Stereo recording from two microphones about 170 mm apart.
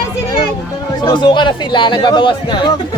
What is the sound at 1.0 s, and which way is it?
Speech, 25° left (ahead or behind).